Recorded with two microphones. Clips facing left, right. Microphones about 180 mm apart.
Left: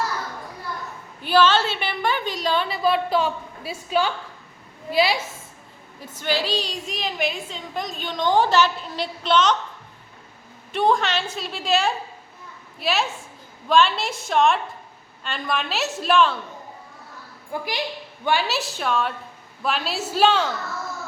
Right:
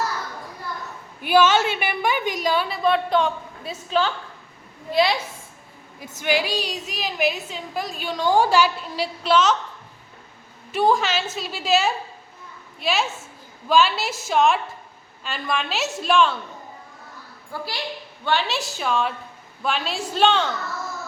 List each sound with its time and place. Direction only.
1.2 s a woman's voice: 10° right (ahead or behind)
2.8 s a woman's voice: 5° left (ahead or behind)
6.1 s a woman's voice: 10° right (ahead or behind)
10.7 s a woman's voice: 5° right (ahead or behind)
17.5 s a woman's voice: 15° left (ahead or behind)
18.3 s a woman's voice: 5° left (ahead or behind)